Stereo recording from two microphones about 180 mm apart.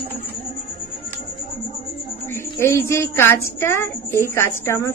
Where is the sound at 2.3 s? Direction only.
15° left (ahead or behind).